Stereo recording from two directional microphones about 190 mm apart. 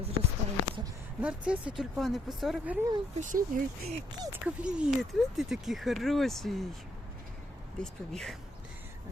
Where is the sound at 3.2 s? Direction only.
45° right (ahead or behind).